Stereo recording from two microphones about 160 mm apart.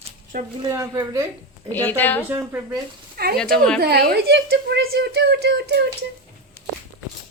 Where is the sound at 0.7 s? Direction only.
20° right (ahead or behind).